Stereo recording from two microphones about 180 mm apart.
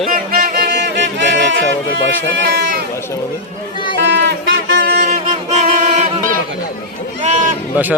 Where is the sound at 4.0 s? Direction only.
80° right.